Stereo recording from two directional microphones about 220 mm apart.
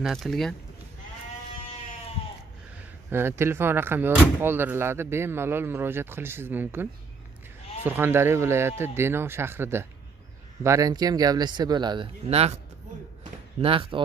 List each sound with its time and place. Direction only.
0.0 s speech: centre (ahead or behind)
3.1 s speech: 10° right (ahead or behind); by 12.5 s 30° right (ahead or behind)
13.6 s speech: 25° right (ahead or behind)